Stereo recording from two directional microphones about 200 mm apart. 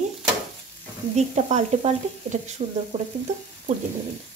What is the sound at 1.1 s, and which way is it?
Speech, 35° right (ahead or behind).